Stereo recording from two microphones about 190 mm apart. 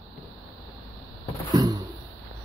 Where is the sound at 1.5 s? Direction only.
20° right (ahead or behind).